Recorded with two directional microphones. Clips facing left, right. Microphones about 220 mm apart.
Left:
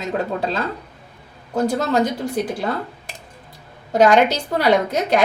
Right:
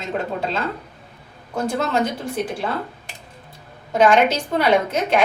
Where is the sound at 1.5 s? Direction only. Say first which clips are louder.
Left 3 dB; 35° left (ahead or behind).